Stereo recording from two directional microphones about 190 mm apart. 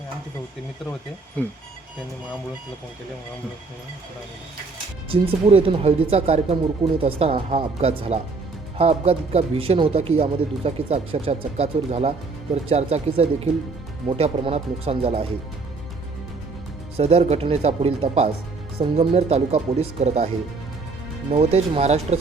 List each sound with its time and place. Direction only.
1.4 s speech: 10° left (ahead or behind)
5.0 s speech: 30° right (ahead or behind)
17.0 s speech: 35° right (ahead or behind)
21.3 s speech: 35° right (ahead or behind)